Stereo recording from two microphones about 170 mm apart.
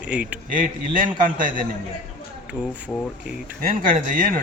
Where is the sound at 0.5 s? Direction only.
55° right (ahead or behind).